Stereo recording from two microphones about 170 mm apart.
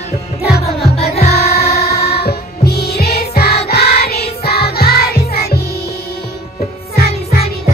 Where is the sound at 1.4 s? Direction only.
65° left (ahead or behind).